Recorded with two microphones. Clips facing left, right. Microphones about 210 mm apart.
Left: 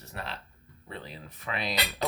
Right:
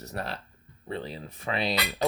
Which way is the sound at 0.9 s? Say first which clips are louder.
Right 7 dB; 30° right (ahead or behind).